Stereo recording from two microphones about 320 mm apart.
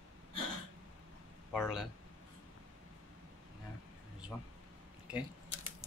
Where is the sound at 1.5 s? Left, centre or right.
Centre.